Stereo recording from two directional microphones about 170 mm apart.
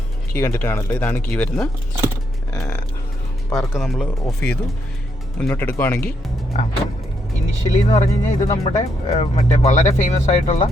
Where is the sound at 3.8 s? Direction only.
Centre (ahead or behind).